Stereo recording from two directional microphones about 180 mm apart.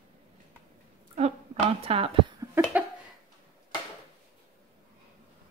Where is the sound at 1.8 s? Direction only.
30° right (ahead or behind).